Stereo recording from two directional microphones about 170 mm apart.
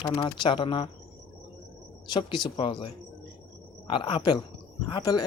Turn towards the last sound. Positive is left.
turn(degrees=25)  # may be behind; listen again after turning